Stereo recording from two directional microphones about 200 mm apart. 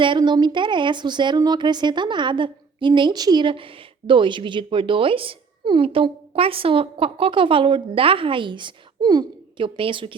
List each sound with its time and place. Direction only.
0.0 s speech: 25° right (ahead or behind)